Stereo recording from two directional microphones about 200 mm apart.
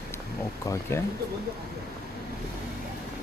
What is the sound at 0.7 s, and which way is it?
Speech, 15° left (ahead or behind).